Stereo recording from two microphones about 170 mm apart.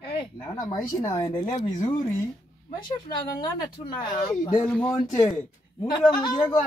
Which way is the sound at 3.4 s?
25° left (ahead or behind).